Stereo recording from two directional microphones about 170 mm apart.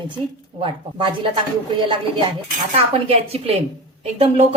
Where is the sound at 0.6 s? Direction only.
30° right (ahead or behind).